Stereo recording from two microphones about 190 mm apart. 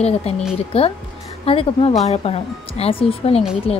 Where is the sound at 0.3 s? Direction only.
30° left (ahead or behind).